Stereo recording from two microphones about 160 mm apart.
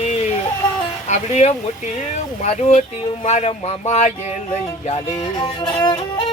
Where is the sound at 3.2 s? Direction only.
40° left (ahead or behind).